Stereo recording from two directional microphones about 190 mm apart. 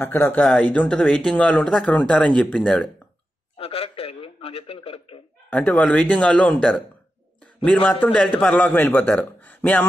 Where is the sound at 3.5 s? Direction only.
30° left (ahead or behind).